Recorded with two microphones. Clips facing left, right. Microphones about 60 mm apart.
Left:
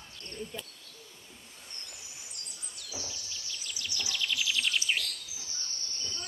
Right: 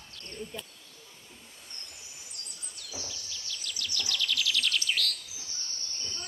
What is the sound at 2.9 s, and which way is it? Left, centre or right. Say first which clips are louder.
Bird: even; centre.